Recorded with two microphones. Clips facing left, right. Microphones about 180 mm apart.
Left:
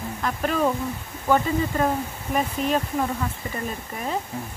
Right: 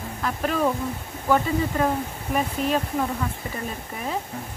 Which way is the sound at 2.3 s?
Centre (ahead or behind).